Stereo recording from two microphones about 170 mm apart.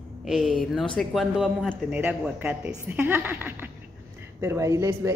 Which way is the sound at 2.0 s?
10° right (ahead or behind).